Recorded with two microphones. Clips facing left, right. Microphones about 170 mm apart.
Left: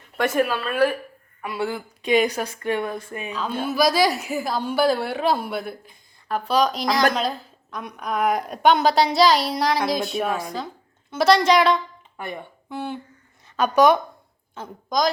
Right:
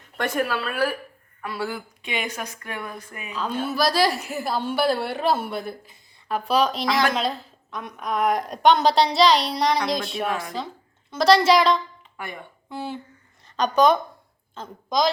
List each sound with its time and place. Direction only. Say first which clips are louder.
0.2 s speech: left 4 dB; 10° left (ahead or behind)
0.6 s a woman's voice: left 4 dB; 5° right (ahead or behind)
1.4 s speech: left 3 dB; 20° left (ahead or behind)
2.0 s a woman's voice: left 13 dB; 40° left (ahead or behind)
3.3 s a woman's voice: left 2 dB; 5° left (ahead or behind)
13.6 s a woman's voice: left 2 dB; 10° left (ahead or behind)